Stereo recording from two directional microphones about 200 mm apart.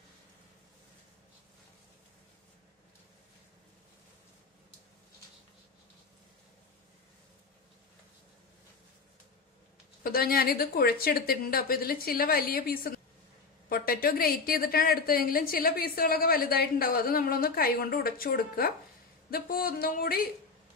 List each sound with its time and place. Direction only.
10.0 s a woman's voice: 50° left (ahead or behind)